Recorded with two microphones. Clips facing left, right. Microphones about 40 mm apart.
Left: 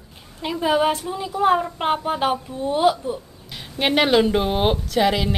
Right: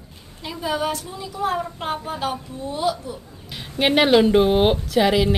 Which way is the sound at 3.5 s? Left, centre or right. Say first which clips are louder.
Right 2 dB; centre.